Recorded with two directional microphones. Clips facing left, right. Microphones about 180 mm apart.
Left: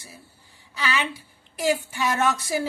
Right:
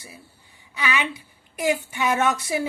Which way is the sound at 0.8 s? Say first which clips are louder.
Right 1 dB; 15° right (ahead or behind).